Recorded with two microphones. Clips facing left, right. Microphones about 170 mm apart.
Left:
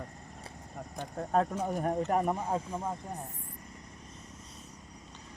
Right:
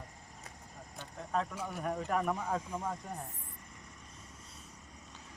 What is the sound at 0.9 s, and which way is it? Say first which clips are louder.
Speech: left 7 dB; 50° left (ahead or behind).